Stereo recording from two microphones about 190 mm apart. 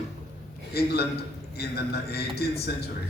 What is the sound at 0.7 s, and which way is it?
A man's voice, 55° left (ahead or behind).